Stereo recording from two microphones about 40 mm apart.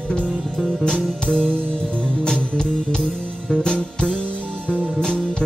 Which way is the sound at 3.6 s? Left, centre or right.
Centre.